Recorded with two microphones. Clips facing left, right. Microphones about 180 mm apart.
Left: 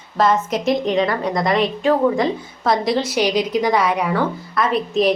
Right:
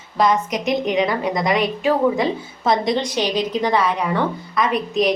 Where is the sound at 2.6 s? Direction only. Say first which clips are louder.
Left 1 dB; centre (ahead or behind).